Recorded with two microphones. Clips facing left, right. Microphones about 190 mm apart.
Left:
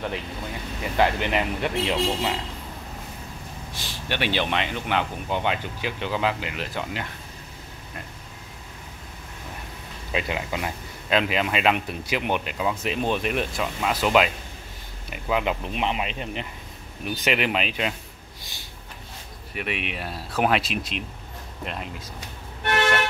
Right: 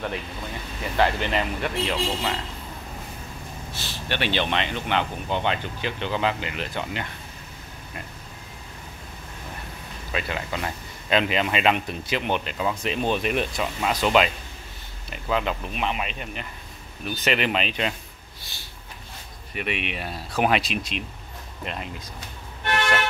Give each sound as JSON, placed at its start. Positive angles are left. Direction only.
{"t": 0.9, "sound": "speech", "side_deg": 15}
{"t": 3.7, "sound": "speech", "side_deg": 15}
{"t": 10.1, "sound": "speech", "side_deg": 15}
{"t": 11.1, "sound": "a man's voice", "side_deg": 5}
{"t": 17.0, "sound": "speech", "side_deg": 15}
{"t": 19.5, "sound": "speech", "side_deg": 0}